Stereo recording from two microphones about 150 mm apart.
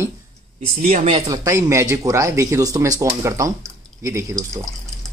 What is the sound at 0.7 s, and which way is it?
Speech, 65° right (ahead or behind).